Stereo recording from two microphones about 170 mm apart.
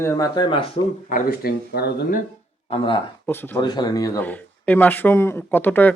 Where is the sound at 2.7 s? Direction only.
30° left (ahead or behind).